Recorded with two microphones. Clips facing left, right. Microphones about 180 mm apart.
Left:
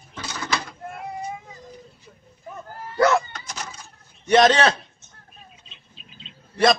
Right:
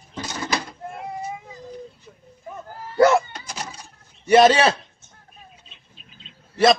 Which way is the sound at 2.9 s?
10° right (ahead or behind).